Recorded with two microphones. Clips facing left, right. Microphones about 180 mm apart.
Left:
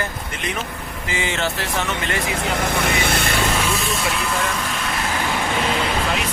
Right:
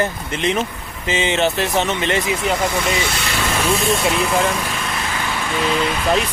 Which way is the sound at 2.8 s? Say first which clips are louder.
Even; 55° left (ahead or behind).